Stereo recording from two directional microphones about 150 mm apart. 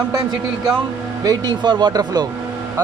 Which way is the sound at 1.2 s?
25° right (ahead or behind).